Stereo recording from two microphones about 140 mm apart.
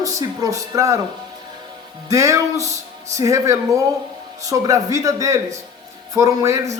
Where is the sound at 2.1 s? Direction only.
25° right (ahead or behind).